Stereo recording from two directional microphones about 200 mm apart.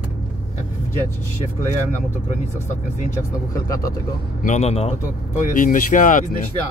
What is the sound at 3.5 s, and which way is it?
Speech, 15° left (ahead or behind).